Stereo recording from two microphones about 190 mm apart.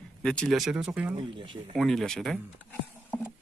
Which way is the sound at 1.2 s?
25° right (ahead or behind).